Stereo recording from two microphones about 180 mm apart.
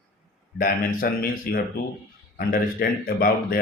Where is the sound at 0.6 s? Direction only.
55° left (ahead or behind).